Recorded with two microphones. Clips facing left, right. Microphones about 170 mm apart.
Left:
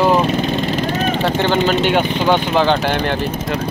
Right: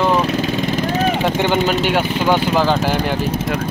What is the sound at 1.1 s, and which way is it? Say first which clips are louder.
Speech: even; 10° right (ahead or behind).